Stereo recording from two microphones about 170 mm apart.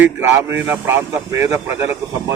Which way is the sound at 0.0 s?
15° right (ahead or behind).